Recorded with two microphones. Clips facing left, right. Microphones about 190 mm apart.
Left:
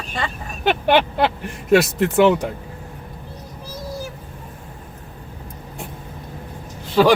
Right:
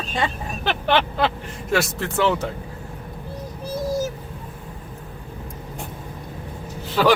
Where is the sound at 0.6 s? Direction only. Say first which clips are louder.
Left 4 dB; 15° left (ahead or behind).